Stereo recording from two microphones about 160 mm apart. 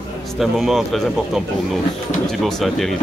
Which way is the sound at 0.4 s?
Centre (ahead or behind).